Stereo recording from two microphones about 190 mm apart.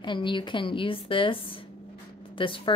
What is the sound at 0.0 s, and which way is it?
Speech, 25° left (ahead or behind).